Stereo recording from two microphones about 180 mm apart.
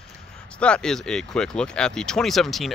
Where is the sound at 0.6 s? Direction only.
5° left (ahead or behind).